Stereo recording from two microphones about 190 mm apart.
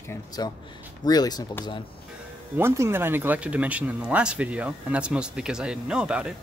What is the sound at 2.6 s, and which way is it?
Speech, 15° right (ahead or behind).